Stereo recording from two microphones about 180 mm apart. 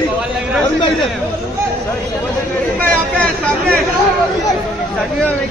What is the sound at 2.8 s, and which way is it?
Speech, 10° left (ahead or behind).